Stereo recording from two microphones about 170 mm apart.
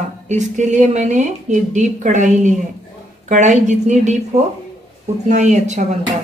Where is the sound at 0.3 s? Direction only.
45° right (ahead or behind).